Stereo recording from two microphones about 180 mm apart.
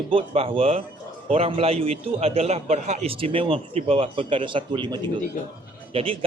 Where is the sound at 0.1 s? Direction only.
30° right (ahead or behind).